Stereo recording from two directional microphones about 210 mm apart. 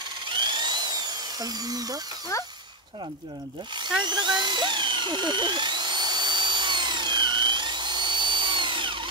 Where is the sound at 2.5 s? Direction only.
20° right (ahead or behind).